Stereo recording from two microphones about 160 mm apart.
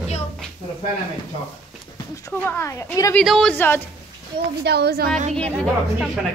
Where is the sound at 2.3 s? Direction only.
15° left (ahead or behind).